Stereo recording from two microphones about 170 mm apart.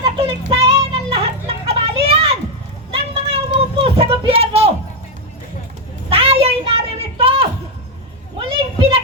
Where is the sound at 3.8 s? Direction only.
35° right (ahead or behind).